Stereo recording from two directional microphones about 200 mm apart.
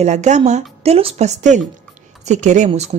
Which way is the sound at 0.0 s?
35° right (ahead or behind).